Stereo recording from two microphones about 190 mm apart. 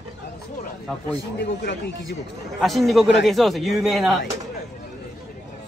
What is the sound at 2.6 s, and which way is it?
Speech, centre (ahead or behind).